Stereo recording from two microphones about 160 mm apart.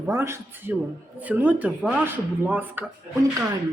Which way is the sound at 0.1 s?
15° right (ahead or behind).